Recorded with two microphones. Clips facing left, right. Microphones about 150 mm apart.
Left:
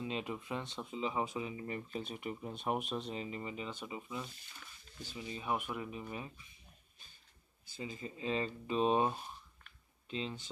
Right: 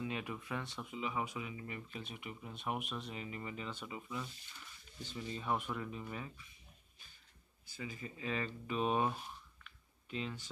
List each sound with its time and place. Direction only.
0.0 s speech: 25° left (ahead or behind)
7.7 s speech: 25° left (ahead or behind)